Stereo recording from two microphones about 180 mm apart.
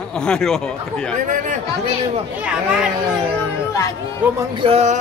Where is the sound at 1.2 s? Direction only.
45° right (ahead or behind).